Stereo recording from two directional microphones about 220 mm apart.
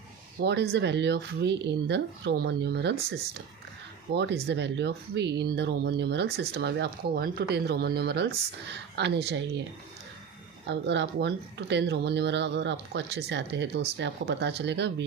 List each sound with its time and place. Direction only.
0.4 s speech: 50° right (ahead or behind)
10.7 s speech: 50° right (ahead or behind)